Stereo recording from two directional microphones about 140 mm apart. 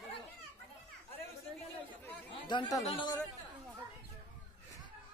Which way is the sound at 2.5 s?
30° left (ahead or behind).